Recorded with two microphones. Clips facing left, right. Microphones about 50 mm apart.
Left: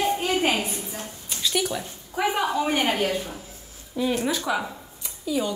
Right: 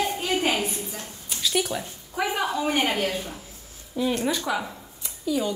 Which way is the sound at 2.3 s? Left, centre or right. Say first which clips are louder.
Left 1 dB; left.